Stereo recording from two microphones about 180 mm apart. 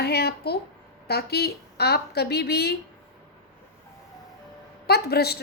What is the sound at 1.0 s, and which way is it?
A woman's voice, 60° left (ahead or behind).